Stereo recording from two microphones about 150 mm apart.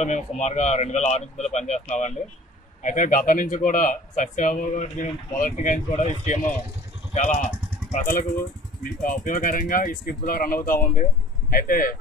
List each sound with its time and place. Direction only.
0.4 s a man's voice: 50° left (ahead or behind)
7.2 s speech: 55° left (ahead or behind); by 12.0 s 75° left (ahead or behind)